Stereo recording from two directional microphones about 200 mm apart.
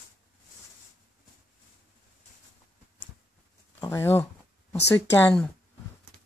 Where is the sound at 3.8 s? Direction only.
15° left (ahead or behind).